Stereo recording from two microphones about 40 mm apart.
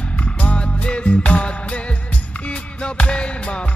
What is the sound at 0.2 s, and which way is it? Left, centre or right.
Music, left.